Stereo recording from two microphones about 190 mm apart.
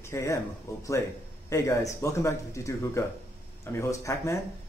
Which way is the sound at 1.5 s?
15° left (ahead or behind).